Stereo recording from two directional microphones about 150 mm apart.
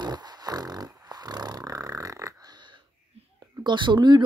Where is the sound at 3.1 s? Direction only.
45° right (ahead or behind).